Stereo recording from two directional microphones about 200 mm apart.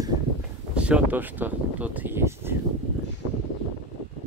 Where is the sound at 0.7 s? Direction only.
5° right (ahead or behind).